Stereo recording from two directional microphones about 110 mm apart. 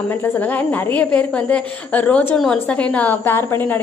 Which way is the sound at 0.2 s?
15° left (ahead or behind).